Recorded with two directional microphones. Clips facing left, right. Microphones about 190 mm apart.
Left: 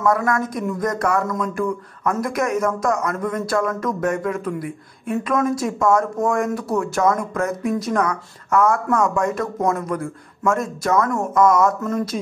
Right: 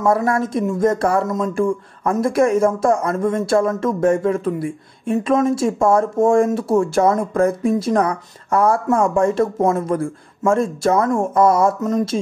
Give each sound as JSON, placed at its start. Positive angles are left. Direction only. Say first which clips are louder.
{"t": 0.0, "sound": "speech", "louder": "right 2 dB", "side_deg": -30}